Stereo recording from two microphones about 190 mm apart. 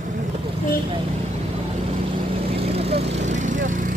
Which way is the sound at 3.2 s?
40° right (ahead or behind).